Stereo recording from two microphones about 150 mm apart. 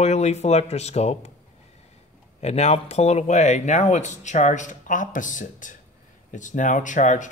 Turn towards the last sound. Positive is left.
turn(degrees=55)  # may be behind; listen again after turning